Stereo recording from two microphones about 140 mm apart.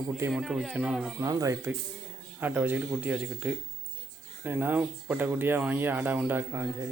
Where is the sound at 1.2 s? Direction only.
25° right (ahead or behind).